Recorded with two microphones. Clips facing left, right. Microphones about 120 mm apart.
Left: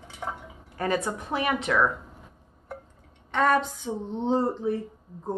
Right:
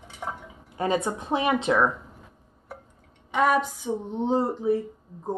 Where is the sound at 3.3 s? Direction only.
10° right (ahead or behind).